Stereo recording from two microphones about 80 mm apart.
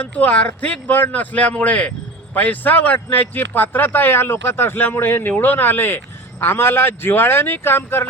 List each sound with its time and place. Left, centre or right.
0.0 s speech: left